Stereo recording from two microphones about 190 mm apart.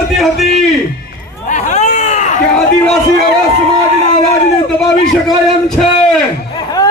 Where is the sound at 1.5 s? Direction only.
40° left (ahead or behind).